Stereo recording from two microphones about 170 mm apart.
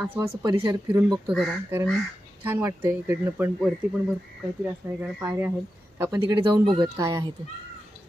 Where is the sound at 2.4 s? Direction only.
15° right (ahead or behind).